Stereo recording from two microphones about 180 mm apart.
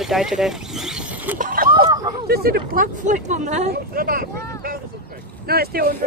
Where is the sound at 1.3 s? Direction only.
50° right (ahead or behind).